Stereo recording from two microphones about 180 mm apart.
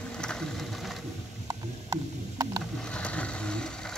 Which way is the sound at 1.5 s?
20° right (ahead or behind).